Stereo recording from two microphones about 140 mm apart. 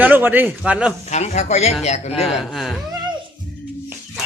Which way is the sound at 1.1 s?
55° left (ahead or behind).